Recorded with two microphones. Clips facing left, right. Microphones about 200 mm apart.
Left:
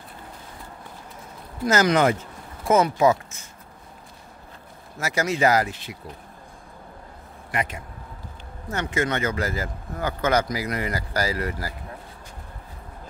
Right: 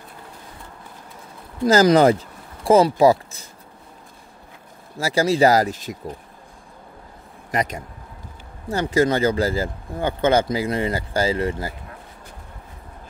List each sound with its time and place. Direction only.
1.7 s speech: 35° right (ahead or behind)
4.9 s speech: 30° right (ahead or behind)
7.5 s speech: 40° right (ahead or behind)